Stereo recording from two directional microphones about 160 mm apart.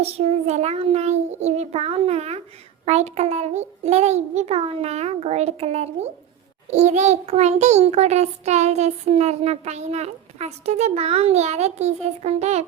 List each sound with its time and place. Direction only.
0.0 s a child's voice: 40° right (ahead or behind)